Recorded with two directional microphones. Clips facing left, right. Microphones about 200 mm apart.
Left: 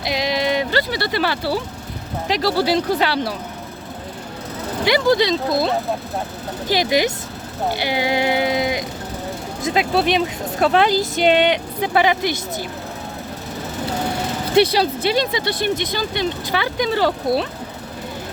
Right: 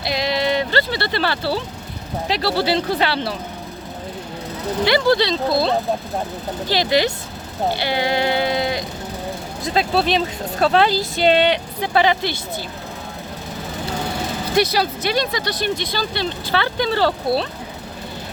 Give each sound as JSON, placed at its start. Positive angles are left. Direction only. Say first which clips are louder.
{"t": 0.0, "sound": "a sound", "louder": "even", "side_deg": 15}
{"t": 2.2, "sound": "speech", "louder": "left 1 dB", "side_deg": 15}
{"t": 4.9, "sound": "speech", "louder": "left 1 dB", "side_deg": 15}
{"t": 6.7, "sound": "speech", "louder": "even", "side_deg": 15}
{"t": 7.8, "sound": "a sound", "louder": "left 2 dB", "side_deg": 15}
{"t": 9.6, "sound": "speech", "louder": "left 1 dB", "side_deg": 15}
{"t": 14.5, "sound": "speech", "louder": "left 4 dB", "side_deg": 25}